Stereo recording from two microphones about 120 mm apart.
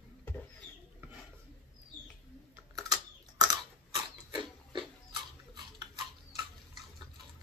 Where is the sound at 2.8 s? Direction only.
30° right (ahead or behind).